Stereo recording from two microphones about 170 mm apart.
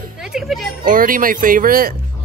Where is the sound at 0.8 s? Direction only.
55° right (ahead or behind).